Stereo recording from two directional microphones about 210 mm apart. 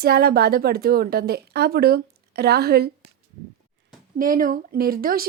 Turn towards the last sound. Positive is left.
turn(degrees=-45)  # may be behind; listen again after turning